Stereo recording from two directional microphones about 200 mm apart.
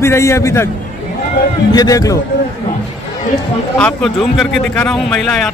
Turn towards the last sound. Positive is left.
turn(degrees=0)  # may be behind; listen again after turning